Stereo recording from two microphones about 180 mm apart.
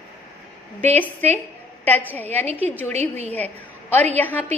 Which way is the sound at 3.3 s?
10° left (ahead or behind).